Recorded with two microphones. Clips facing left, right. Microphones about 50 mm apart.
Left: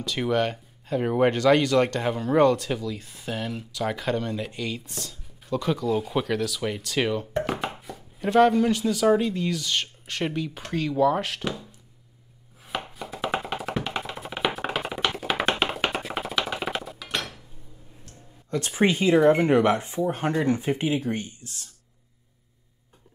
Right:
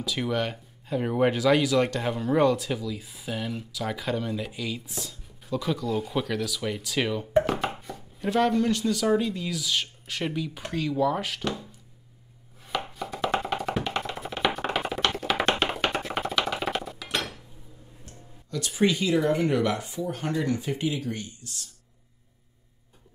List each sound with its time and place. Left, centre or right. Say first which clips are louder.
0.3 s speech: left 4 dB; centre
7.4 s chopping: right 1 dB; centre
9.2 s speech: left 3 dB; centre
12.9 s music: right 1 dB; centre
18.5 s speech: left 2 dB; left